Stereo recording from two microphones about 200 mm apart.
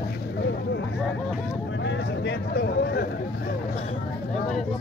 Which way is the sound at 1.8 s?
60° left (ahead or behind).